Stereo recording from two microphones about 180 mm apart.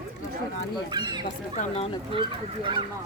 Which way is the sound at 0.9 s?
25° right (ahead or behind).